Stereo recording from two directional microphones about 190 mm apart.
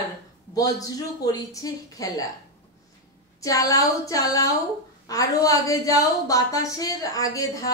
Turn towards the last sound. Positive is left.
turn(degrees=20)  # may be behind; listen again after turning